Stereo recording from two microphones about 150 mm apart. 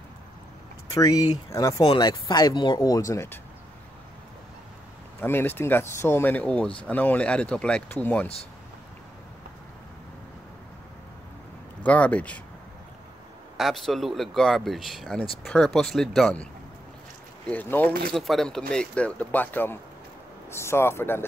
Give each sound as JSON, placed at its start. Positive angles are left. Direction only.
{"t": 0.9, "sound": "speech", "side_deg": 25}
{"t": 5.2, "sound": "speech", "side_deg": 15}
{"t": 11.8, "sound": "speech", "side_deg": 10}
{"t": 13.6, "sound": "speech", "side_deg": 0}
{"t": 17.5, "sound": "speech", "side_deg": 10}
{"t": 18.1, "sound": "speech", "side_deg": 0}